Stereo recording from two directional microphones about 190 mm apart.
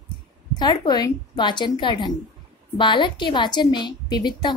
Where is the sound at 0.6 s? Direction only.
20° left (ahead or behind).